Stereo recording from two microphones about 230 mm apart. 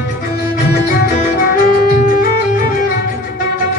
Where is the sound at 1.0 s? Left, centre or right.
Left.